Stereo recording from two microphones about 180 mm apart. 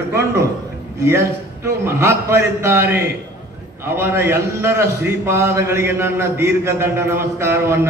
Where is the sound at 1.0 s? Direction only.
15° right (ahead or behind).